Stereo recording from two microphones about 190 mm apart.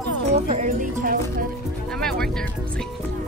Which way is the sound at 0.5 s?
40° right (ahead or behind).